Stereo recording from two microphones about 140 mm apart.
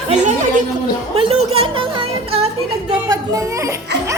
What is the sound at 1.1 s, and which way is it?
Speech, 45° right (ahead or behind).